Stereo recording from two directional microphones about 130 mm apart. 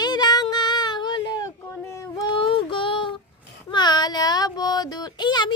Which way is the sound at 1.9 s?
25° left (ahead or behind).